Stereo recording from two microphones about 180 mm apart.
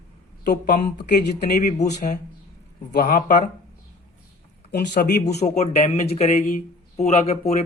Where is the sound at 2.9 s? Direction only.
55° left (ahead or behind).